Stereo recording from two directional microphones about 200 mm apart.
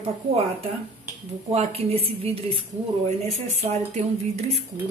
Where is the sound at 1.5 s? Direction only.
30° right (ahead or behind).